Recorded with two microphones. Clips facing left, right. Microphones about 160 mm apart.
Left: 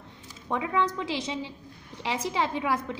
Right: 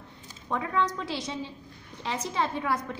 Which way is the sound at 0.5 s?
15° left (ahead or behind).